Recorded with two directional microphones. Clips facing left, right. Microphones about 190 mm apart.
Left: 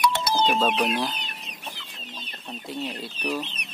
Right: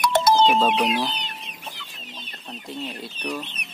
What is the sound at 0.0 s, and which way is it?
Music, 45° right (ahead or behind).